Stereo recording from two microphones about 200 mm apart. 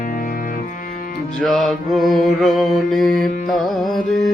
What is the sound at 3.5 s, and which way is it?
Music, centre (ahead or behind).